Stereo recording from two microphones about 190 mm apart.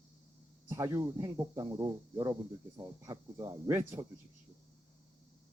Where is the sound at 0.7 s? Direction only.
15° right (ahead or behind).